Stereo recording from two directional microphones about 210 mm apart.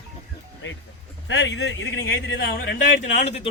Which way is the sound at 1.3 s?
60° left (ahead or behind).